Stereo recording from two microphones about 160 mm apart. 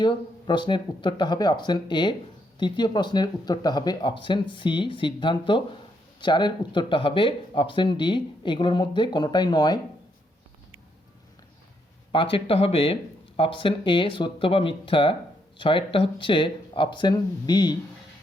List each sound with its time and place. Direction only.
0.0 s speech: 30° left (ahead or behind)
12.1 s speech: 35° left (ahead or behind)